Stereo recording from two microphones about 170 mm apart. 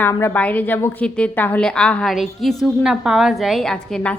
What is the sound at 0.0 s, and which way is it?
A woman's voice, 15° left (ahead or behind).